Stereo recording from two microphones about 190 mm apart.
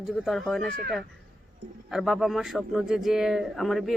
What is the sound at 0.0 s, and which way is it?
Speech, centre (ahead or behind).